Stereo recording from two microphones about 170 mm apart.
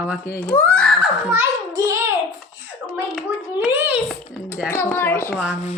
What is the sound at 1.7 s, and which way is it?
Child singing, 20° right (ahead or behind).